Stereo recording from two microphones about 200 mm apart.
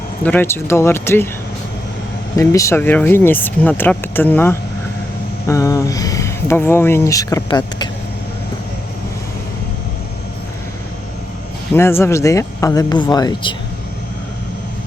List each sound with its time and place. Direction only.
0.2 s speech: 10° left (ahead or behind)
2.3 s speech: 15° left (ahead or behind)
11.7 s speech: 10° left (ahead or behind)